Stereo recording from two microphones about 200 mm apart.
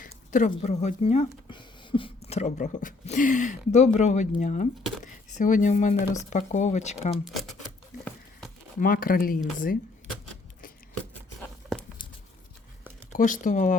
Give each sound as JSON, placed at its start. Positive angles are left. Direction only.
{"t": 0.0, "sound": "a sound", "side_deg": 40}
{"t": 0.6, "sound": "speech", "side_deg": 35}
{"t": 7.3, "sound": "speech", "side_deg": 0}
{"t": 8.8, "sound": "speech", "side_deg": 45}
{"t": 13.1, "sound": "speech", "side_deg": 40}